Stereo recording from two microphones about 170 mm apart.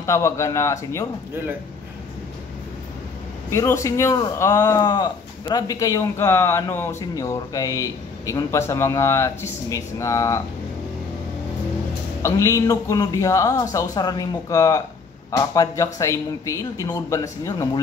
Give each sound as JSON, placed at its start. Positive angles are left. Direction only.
{"t": 0.0, "sound": "a man's voice", "side_deg": 15}
{"t": 3.4, "sound": "a man's voice", "side_deg": 15}
{"t": 12.2, "sound": "a man's voice", "side_deg": 20}